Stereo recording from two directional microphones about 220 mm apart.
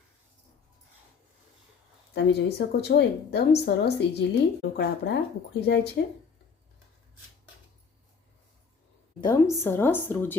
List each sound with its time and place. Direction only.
2.1 s a woman's voice: 50° left (ahead or behind)
9.2 s a woman's voice: 10° left (ahead or behind)